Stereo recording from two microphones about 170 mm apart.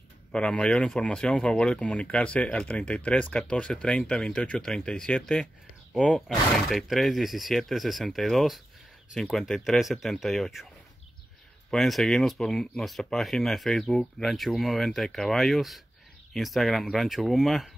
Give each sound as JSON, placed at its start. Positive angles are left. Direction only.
{"t": 0.3, "sound": "speech", "side_deg": 5}
{"t": 11.7, "sound": "speech", "side_deg": 0}